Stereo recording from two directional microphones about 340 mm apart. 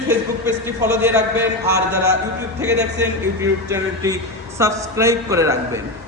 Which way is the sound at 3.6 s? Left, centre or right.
Centre.